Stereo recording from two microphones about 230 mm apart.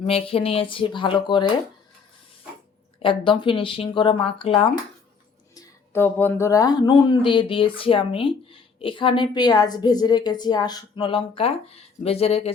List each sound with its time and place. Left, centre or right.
0.0 s speech: left
3.0 s speech: left
5.5 s speech: centre; by 12.5 s left